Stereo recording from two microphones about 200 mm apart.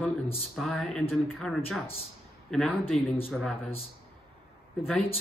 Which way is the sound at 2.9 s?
30° left (ahead or behind).